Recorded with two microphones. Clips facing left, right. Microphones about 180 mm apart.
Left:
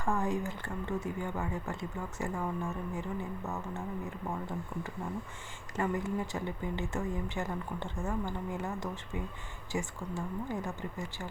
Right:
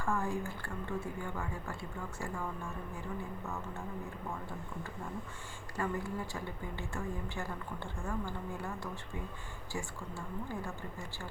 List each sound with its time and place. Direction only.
0.0 s speech: 20° left (ahead or behind)
5.7 s speech: 20° left (ahead or behind)